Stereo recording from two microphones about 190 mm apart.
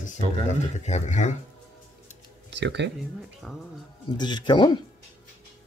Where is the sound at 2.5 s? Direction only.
65° right (ahead or behind).